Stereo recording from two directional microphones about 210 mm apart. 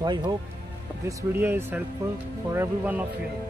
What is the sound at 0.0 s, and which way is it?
Speech, 20° right (ahead or behind).